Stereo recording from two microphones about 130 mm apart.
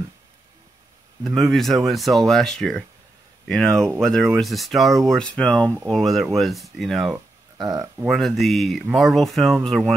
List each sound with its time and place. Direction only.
1.2 s speech: centre (ahead or behind)
7.5 s speech: 25° right (ahead or behind)
8.0 s speech: centre (ahead or behind)